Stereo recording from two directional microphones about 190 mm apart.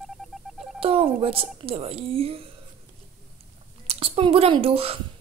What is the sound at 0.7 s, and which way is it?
Speech, 30° right (ahead or behind).